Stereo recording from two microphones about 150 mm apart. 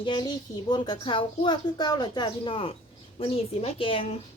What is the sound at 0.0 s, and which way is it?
A woman's voice, 35° left (ahead or behind).